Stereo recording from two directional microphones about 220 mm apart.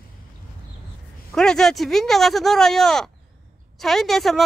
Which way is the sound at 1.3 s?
5° left (ahead or behind).